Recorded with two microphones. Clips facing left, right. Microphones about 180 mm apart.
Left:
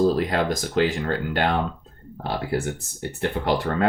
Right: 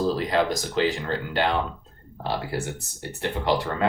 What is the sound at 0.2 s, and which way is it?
Speech, 50° left (ahead or behind).